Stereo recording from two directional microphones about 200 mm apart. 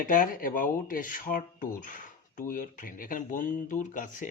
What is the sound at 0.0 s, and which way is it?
A man's voice, 45° left (ahead or behind).